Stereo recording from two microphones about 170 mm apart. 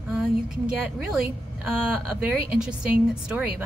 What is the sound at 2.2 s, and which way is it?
A woman's voice, 5° right (ahead or behind).